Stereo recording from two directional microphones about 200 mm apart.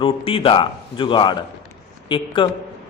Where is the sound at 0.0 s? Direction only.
25° left (ahead or behind).